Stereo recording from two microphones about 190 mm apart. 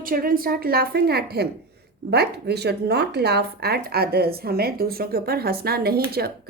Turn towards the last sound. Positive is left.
turn(degrees=-55)  # may be behind; listen again after turning